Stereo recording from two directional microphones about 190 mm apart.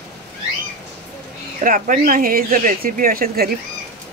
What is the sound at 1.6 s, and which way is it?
Speech, 45° right (ahead or behind).